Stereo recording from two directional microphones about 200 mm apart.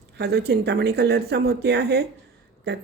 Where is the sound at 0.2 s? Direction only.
55° right (ahead or behind).